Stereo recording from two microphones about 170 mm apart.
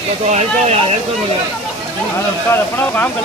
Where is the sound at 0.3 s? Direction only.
45° right (ahead or behind).